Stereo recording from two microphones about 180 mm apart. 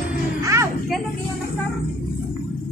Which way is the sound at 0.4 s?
15° right (ahead or behind).